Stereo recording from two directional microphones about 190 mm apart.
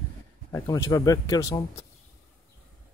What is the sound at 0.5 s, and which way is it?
Speech, 15° left (ahead or behind).